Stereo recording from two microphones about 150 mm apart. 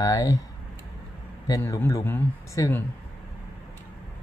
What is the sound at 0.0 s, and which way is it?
Speech, 20° left (ahead or behind).